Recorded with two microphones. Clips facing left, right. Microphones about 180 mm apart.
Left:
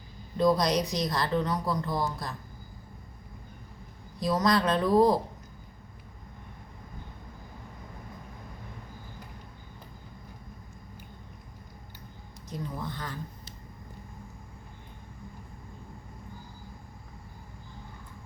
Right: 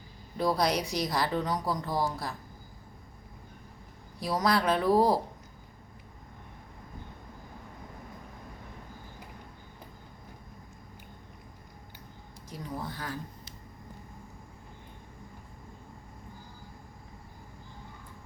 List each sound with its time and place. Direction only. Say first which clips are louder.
0.3 s a woman's voice: left 3 dB; 5° right (ahead or behind)
4.2 s a woman's voice: left 2 dB; 10° right (ahead or behind)
12.5 s a woman's voice: left 2 dB; 10° right (ahead or behind)